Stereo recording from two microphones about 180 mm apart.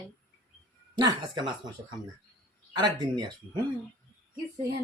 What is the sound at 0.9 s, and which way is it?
Speech, 25° right (ahead or behind).